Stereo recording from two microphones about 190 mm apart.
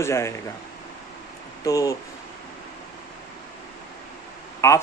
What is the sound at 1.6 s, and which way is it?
Speech, 20° left (ahead or behind).